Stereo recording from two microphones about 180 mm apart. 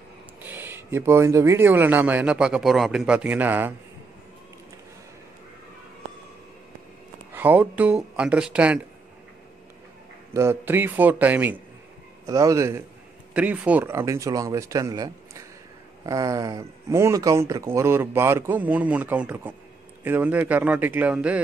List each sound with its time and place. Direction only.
0.4 s speech: 10° right (ahead or behind)
7.3 s speech: 10° right (ahead or behind)
10.3 s speech: 15° right (ahead or behind)